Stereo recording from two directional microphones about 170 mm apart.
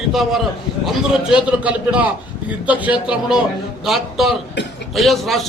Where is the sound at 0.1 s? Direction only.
Centre (ahead or behind).